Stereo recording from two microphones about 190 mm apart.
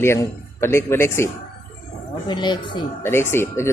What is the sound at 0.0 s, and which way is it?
Speech, 15° left (ahead or behind).